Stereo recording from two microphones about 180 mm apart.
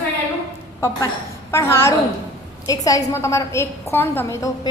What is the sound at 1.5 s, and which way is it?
A woman's voice, 15° left (ahead or behind).